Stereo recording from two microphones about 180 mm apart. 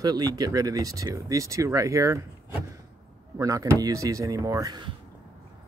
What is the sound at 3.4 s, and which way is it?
Speech, 20° right (ahead or behind).